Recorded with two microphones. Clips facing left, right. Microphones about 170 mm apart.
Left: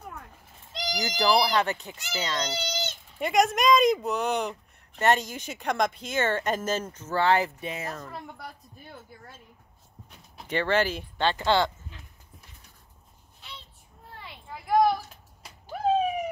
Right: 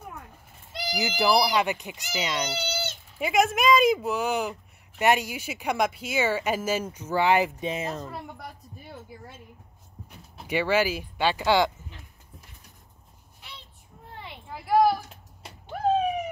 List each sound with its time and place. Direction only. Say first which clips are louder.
0.7 s speech: right 2 dB; 10° right (ahead or behind)
10.3 s speech: right 1 dB; 10° right (ahead or behind)
14.5 s a sound: right 1 dB; 5° right (ahead or behind)